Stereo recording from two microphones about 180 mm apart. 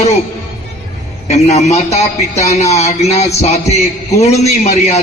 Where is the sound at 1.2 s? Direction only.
35° left (ahead or behind).